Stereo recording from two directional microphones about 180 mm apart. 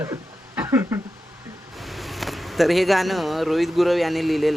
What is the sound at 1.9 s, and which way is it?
Speech, centre (ahead or behind).